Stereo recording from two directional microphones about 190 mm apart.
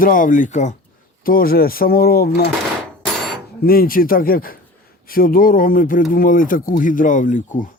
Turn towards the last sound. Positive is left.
turn(degrees=40)  # may be behind; listen again after turning